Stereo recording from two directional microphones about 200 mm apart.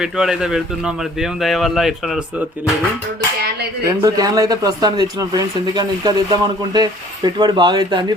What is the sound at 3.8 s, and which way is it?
Speech, 20° right (ahead or behind).